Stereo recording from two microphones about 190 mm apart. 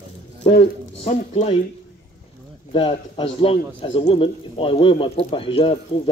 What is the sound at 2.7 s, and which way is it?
A man's voice, 25° left (ahead or behind).